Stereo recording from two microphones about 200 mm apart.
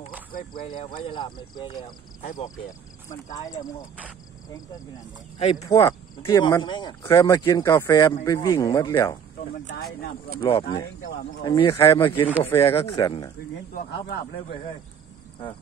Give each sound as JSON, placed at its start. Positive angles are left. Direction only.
{"t": 0.3, "sound": "speech", "side_deg": 45}
{"t": 1.0, "sound": "speech", "side_deg": 25}
{"t": 2.2, "sound": "speech", "side_deg": 40}
{"t": 5.7, "sound": "speech", "side_deg": 25}
{"t": 10.4, "sound": "speech", "side_deg": 30}
{"t": 12.8, "sound": "speech", "side_deg": 25}
{"t": 13.7, "sound": "speech", "side_deg": 45}